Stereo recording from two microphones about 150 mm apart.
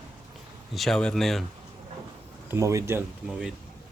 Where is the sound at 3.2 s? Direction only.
5° right (ahead or behind).